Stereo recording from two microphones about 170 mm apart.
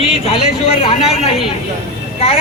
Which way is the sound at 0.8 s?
30° left (ahead or behind).